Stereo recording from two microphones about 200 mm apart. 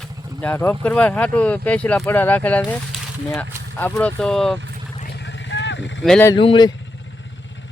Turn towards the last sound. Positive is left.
turn(degrees=25)  # may be behind; listen again after turning